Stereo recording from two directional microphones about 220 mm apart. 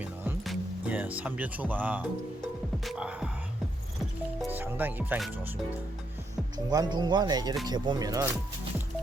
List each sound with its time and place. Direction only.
0.0 s music: 5° right (ahead or behind)
4.5 s speech: 10° right (ahead or behind)
6.7 s speech: 20° right (ahead or behind)